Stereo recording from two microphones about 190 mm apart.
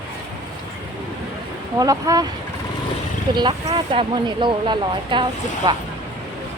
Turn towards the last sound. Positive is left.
turn(degrees=-25)  # may be behind; listen again after turning